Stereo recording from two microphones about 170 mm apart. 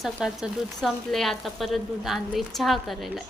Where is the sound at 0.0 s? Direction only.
Centre (ahead or behind).